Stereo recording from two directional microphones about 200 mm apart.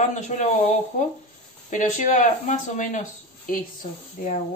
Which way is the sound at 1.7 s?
40° left (ahead or behind).